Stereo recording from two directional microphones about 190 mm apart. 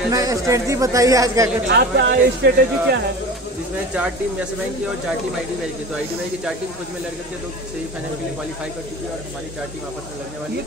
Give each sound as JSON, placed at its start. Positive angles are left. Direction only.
{"t": 0.1, "sound": "speech", "side_deg": -20}
{"t": 1.7, "sound": "speech", "side_deg": -65}